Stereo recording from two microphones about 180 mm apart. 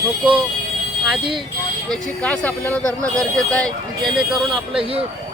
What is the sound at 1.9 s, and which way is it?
Speech, 5° left (ahead or behind).